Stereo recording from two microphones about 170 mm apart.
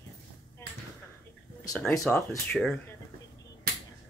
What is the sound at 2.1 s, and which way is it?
Speech, 10° left (ahead or behind).